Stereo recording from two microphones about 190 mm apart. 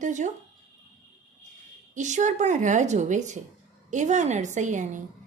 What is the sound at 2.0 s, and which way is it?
A woman's voice, 40° right (ahead or behind).